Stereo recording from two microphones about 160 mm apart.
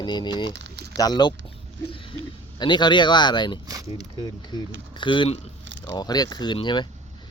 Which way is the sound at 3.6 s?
20° right (ahead or behind).